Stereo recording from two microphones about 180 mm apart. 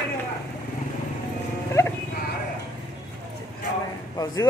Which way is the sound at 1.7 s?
15° left (ahead or behind).